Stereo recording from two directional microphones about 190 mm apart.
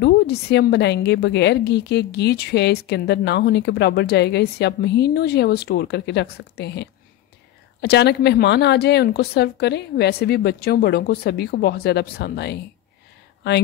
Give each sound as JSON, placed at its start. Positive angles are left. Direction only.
{"t": 0.0, "sound": "a woman's voice", "side_deg": 60}